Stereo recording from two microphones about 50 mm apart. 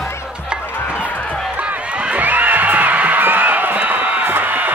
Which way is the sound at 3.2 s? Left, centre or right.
Right.